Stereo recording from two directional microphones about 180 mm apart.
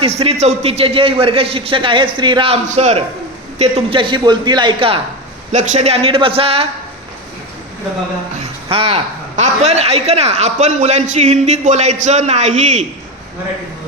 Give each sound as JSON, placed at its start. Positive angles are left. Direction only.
{"t": 0.0, "sound": "a man's voice", "side_deg": -35}
{"t": 2.6, "sound": "a man's voice", "side_deg": -40}
{"t": 5.5, "sound": "a man's voice", "side_deg": -40}
{"t": 8.4, "sound": "a man's voice", "side_deg": -30}